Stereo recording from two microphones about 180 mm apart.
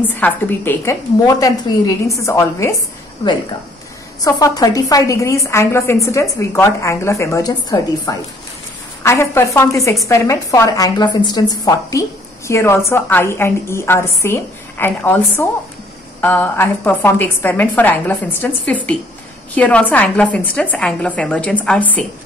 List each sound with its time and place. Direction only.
0.2 s a woman's voice: 10° left (ahead or behind)
4.2 s a woman's voice: 20° left (ahead or behind)